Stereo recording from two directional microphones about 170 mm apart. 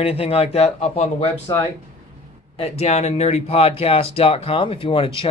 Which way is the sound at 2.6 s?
40° left (ahead or behind).